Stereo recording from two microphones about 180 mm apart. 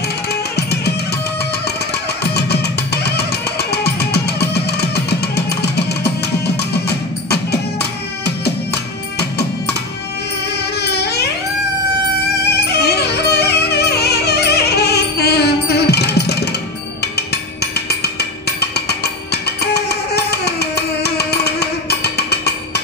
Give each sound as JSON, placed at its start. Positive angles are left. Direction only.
{"t": 3.7, "sound": "music", "side_deg": 65}
{"t": 10.9, "sound": "a sound", "side_deg": 65}
{"t": 12.4, "sound": "music", "side_deg": 65}
{"t": 19.6, "sound": "music", "side_deg": 65}